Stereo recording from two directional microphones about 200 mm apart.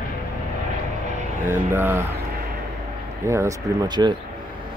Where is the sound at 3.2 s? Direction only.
15° right (ahead or behind).